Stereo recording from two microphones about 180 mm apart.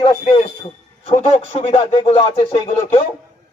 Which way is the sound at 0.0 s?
35° left (ahead or behind).